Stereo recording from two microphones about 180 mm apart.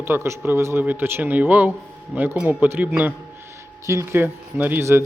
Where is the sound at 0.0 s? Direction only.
10° right (ahead or behind).